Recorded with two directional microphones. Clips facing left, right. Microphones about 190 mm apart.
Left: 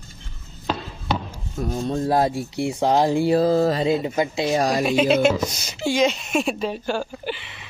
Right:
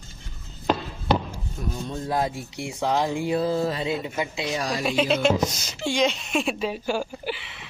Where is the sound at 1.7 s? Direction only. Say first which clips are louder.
Left 7 dB; 35° left (ahead or behind).